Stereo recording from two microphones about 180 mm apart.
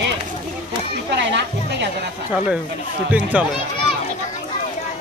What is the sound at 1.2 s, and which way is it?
Music, 75° right (ahead or behind).